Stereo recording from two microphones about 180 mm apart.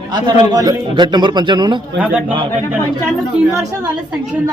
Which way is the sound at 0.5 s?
25° right (ahead or behind).